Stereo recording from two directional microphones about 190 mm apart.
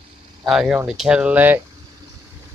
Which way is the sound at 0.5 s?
5° right (ahead or behind).